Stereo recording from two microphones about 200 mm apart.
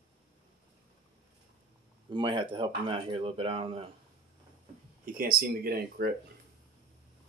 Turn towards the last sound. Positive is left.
turn(degrees=-50)  # may be behind; listen again after turning